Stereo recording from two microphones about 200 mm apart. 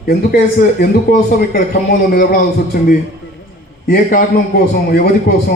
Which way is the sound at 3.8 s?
45° left (ahead or behind).